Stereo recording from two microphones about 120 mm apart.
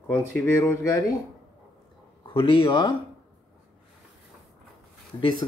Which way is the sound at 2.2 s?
40° left (ahead or behind).